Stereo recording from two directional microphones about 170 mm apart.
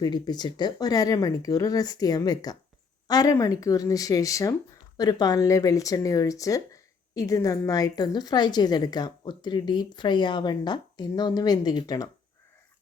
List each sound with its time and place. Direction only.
0.0 s a woman's voice: 25° left (ahead or behind)